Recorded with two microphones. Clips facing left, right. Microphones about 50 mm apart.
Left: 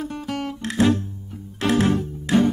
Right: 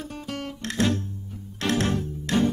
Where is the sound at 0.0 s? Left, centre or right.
Left.